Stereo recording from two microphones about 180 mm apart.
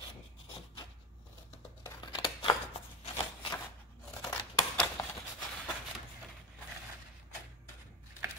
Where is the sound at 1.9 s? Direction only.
30° left (ahead or behind).